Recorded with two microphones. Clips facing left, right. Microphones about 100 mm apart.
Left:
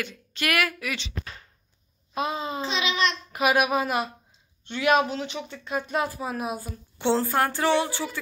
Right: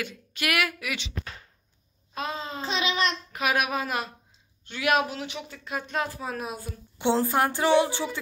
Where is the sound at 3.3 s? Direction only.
5° left (ahead or behind).